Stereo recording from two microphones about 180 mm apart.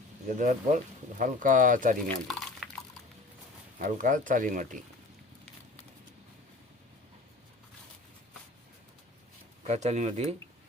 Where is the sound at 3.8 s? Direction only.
45° right (ahead or behind).